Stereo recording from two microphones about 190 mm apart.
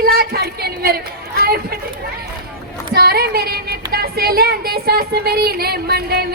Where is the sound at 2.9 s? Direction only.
55° right (ahead or behind).